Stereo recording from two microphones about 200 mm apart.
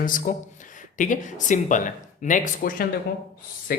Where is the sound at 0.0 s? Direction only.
45° left (ahead or behind).